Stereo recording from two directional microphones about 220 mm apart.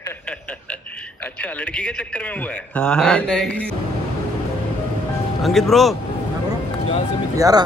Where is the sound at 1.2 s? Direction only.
10° left (ahead or behind).